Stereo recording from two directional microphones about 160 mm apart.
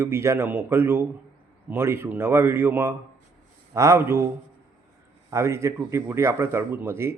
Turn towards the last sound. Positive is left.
turn(degrees=-15)  # may be behind; listen again after turning